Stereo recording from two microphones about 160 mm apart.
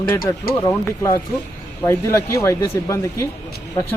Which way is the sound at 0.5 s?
15° left (ahead or behind).